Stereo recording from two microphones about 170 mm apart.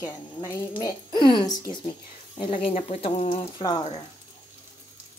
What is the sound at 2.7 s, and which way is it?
Speech, 35° left (ahead or behind).